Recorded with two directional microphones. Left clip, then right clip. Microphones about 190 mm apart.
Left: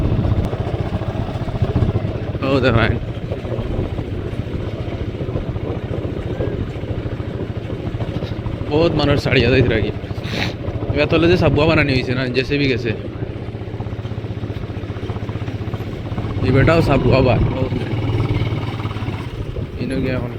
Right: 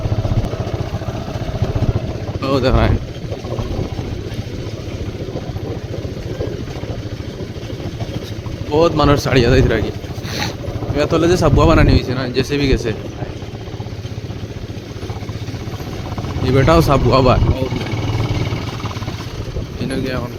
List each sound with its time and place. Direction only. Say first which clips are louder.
2.4 s speech: even; 15° right (ahead or behind)
8.7 s speech: right 3 dB; 35° right (ahead or behind)
10.9 s speech: even; 25° right (ahead or behind)
12.4 s speech: right 2 dB; 35° right (ahead or behind)
16.5 s speech: right 2 dB; 25° right (ahead or behind)
19.8 s boat: even; 30° right (ahead or behind)